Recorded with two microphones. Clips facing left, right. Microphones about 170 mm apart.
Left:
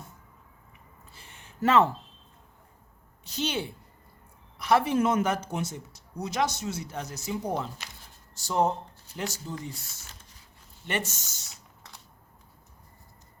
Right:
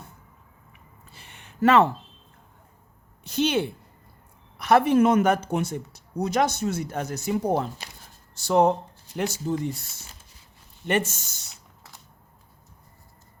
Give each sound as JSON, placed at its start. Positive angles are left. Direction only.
{"t": 1.1, "sound": "a sound", "side_deg": -70}
{"t": 3.2, "sound": "speech", "side_deg": -60}
{"t": 8.4, "sound": "speech", "side_deg": -70}
{"t": 9.5, "sound": "speech", "side_deg": -55}
{"t": 10.8, "sound": "speech", "side_deg": -55}